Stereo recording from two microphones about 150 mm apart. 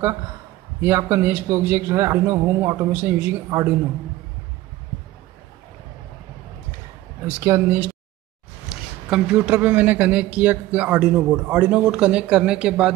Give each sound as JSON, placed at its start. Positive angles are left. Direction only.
{"t": 0.8, "sound": "a man's voice", "side_deg": -15}
{"t": 7.3, "sound": "a man's voice", "side_deg": -15}
{"t": 9.1, "sound": "a man's voice", "side_deg": -10}